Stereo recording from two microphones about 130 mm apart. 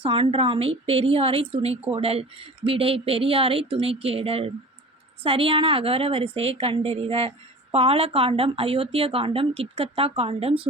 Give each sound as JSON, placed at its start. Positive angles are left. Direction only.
{"t": 0.0, "sound": "a woman's voice", "side_deg": -45}